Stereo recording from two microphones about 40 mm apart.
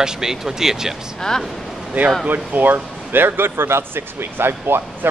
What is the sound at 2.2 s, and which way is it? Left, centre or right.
Speech, right.